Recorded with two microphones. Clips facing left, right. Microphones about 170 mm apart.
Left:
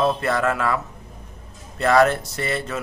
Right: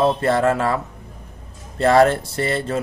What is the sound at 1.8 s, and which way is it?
Speech, 30° right (ahead or behind).